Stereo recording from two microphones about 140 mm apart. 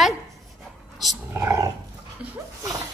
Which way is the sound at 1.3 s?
15° right (ahead or behind).